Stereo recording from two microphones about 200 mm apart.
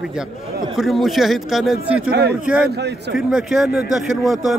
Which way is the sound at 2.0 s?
55° right (ahead or behind).